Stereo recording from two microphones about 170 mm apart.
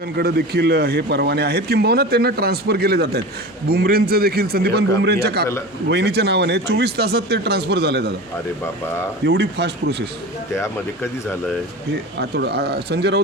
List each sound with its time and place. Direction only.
0.2 s a man's voice: 70° right (ahead or behind)
9.2 s speech: 90° right
12.2 s a man's voice: 75° right (ahead or behind)